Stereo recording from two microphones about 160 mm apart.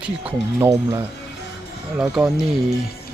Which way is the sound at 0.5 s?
20° right (ahead or behind).